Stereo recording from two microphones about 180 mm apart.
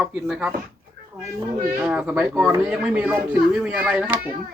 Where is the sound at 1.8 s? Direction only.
5° right (ahead or behind).